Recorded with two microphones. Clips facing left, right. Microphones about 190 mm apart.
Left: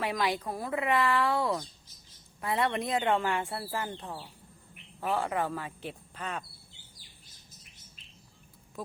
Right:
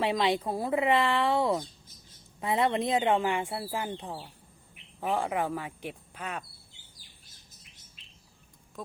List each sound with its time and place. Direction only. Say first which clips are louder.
0.0 s speech: right 4 dB; 25° right (ahead or behind); by 6.4 s 10° right (ahead or behind)